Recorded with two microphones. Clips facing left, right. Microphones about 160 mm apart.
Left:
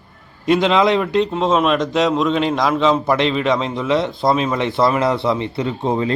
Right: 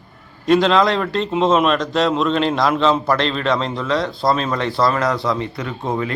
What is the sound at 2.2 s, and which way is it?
A man's voice, 5° left (ahead or behind).